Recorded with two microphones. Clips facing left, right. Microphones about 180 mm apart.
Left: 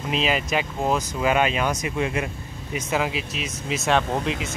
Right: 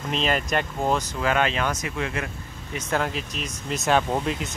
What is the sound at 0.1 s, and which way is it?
Speech, 5° left (ahead or behind).